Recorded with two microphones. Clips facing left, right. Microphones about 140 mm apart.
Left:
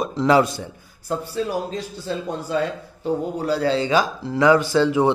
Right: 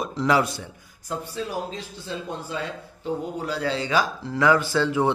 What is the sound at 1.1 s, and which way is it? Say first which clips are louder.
Speech: left 5 dB; 40° left (ahead or behind).